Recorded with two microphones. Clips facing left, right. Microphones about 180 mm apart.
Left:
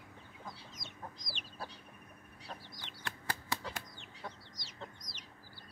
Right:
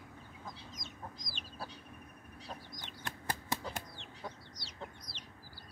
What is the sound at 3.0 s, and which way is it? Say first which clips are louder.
Bird flight: right 1 dB; 20° right (ahead or behind).